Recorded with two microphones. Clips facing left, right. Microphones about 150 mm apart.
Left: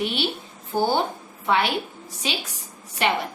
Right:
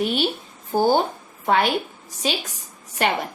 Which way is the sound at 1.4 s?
45° right (ahead or behind).